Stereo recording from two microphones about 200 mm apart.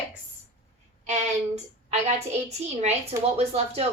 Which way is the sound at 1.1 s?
35° right (ahead or behind).